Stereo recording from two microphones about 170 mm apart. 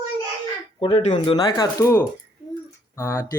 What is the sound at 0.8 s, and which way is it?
Speech, 30° left (ahead or behind).